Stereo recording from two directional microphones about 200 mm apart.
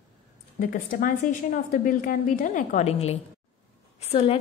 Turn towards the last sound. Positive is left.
turn(degrees=30)  # may be behind; listen again after turning